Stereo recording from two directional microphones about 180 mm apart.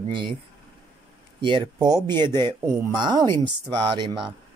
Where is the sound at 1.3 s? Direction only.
25° right (ahead or behind).